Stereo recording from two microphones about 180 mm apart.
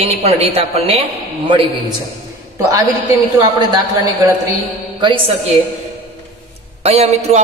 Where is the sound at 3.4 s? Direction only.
20° right (ahead or behind).